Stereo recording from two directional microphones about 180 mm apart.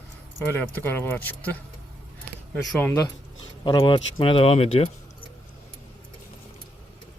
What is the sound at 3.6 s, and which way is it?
Speech, 25° left (ahead or behind).